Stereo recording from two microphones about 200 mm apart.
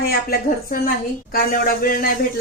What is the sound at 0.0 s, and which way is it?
A woman's voice, 50° left (ahead or behind).